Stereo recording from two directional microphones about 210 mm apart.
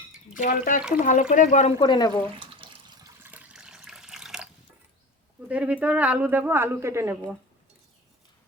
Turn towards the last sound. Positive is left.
turn(degrees=-15)  # may be behind; listen again after turning